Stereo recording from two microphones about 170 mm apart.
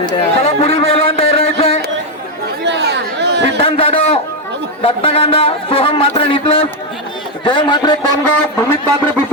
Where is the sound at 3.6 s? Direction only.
35° left (ahead or behind).